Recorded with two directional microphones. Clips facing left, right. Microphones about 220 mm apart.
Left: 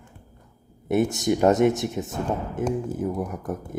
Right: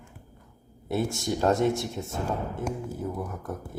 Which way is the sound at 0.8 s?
20° left (ahead or behind).